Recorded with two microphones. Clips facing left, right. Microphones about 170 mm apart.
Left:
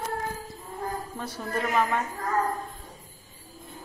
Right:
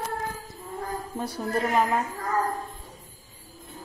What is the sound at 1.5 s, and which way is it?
Speech, 35° right (ahead or behind).